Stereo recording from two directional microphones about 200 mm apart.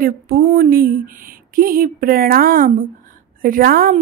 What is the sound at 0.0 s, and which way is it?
Speech, 45° right (ahead or behind).